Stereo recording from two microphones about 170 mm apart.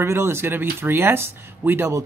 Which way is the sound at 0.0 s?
15° right (ahead or behind).